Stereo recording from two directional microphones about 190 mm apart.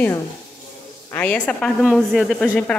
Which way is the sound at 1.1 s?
10° left (ahead or behind).